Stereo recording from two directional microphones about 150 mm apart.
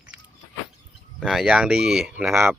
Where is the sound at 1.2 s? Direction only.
5° right (ahead or behind).